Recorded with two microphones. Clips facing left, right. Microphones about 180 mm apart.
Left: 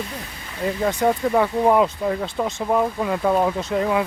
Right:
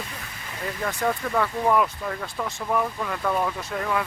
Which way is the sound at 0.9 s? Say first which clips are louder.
Left 6 dB; 20° left (ahead or behind).